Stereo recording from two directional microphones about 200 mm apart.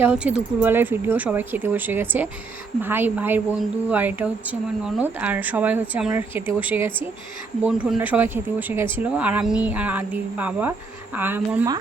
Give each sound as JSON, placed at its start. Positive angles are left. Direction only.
{"t": 0.0, "sound": "speech", "side_deg": -5}